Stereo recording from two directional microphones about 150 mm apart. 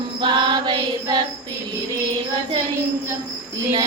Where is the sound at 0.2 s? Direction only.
30° right (ahead or behind).